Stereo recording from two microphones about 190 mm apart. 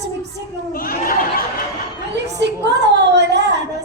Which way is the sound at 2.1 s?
65° right (ahead or behind).